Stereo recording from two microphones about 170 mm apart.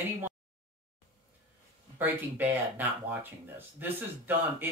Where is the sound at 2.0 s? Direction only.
10° right (ahead or behind).